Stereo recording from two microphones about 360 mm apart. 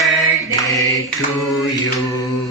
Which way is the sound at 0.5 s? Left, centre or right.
Centre.